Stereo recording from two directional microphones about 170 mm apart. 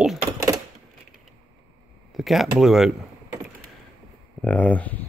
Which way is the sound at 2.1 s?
Centre (ahead or behind).